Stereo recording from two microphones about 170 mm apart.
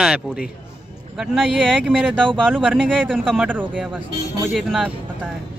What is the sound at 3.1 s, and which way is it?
Speech, 5° left (ahead or behind).